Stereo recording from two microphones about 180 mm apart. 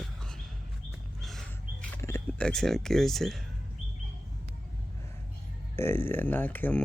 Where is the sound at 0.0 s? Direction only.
5° left (ahead or behind).